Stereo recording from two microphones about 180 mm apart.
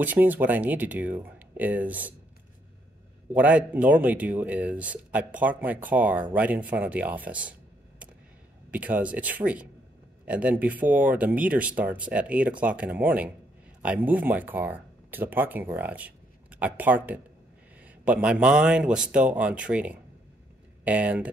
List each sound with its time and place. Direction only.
0.0 s speech: 10° right (ahead or behind)
3.3 s speech: 10° right (ahead or behind)
8.7 s speech: 10° right (ahead or behind)